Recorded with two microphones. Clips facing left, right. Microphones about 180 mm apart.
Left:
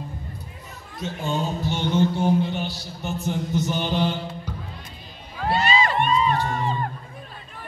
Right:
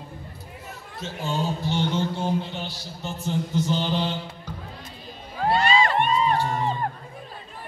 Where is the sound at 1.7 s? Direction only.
15° left (ahead or behind).